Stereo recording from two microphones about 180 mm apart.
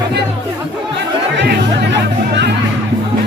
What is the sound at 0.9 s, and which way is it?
Music, 75° right (ahead or behind).